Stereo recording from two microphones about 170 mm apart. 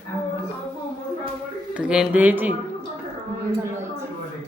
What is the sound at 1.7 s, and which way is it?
Speech, 5° right (ahead or behind).